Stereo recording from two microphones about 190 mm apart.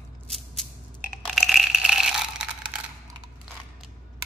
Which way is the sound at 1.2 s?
Centre (ahead or behind).